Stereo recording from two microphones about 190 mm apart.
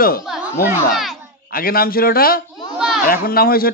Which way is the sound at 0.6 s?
Centre (ahead or behind).